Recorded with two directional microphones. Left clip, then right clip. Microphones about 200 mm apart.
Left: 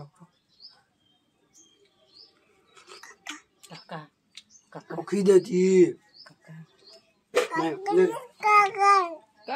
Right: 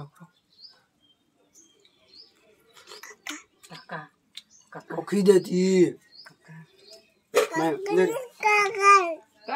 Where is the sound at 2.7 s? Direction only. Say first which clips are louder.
Right 2 dB; 50° right (ahead or behind).